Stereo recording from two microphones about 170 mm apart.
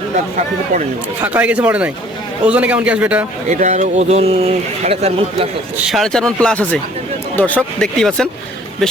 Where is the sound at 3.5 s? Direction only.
45° right (ahead or behind).